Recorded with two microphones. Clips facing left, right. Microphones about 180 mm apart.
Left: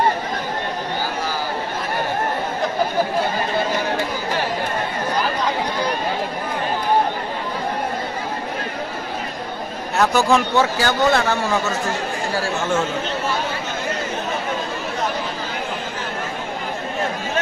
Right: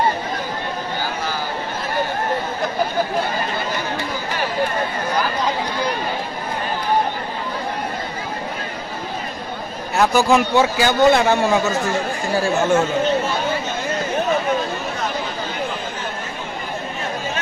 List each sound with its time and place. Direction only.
9.9 s speech: 5° right (ahead or behind)
10.5 s a man's voice: 15° right (ahead or behind)